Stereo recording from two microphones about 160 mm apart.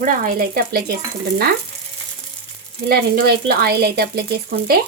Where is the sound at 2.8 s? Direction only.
70° right (ahead or behind).